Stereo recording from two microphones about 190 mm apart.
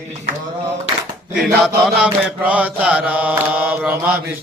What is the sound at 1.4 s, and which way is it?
Mantra, 5° right (ahead or behind).